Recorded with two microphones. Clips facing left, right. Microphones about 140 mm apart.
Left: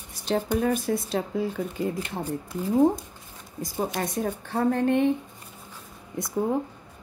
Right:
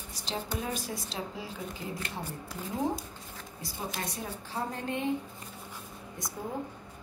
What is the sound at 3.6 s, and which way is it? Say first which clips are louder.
A woman's voice: left 9 dB; 50° left (ahead or behind).